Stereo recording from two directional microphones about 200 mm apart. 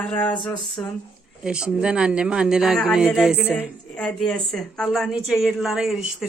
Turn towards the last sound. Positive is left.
turn(degrees=0)  # may be behind; listen again after turning